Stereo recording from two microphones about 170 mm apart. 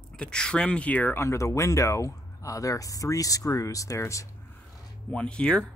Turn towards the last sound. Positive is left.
turn(degrees=5)  # may be behind; listen again after turning